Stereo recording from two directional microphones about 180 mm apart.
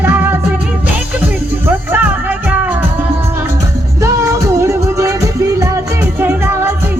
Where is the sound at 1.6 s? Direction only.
10° right (ahead or behind).